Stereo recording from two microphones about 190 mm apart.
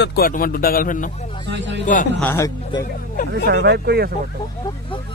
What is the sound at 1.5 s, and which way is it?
Speech, 65° right (ahead or behind).